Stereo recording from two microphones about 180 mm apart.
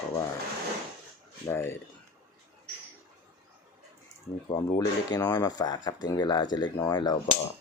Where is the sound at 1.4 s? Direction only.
15° left (ahead or behind).